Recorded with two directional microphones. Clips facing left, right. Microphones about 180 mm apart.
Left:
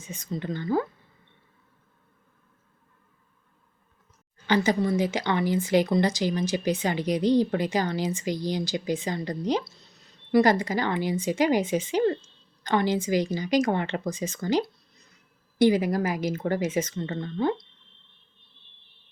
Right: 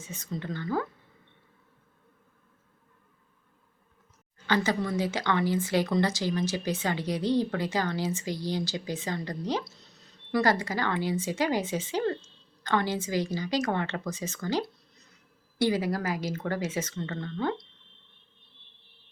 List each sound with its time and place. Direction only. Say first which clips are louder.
0.0 s speech: left 3 dB; 15° left (ahead or behind)
4.4 s speech: left 4 dB; 15° left (ahead or behind)